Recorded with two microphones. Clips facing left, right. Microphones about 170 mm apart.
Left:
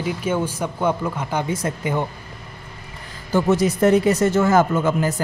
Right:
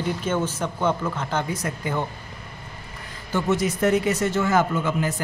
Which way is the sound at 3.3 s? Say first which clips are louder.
Left 5 dB; 35° left (ahead or behind).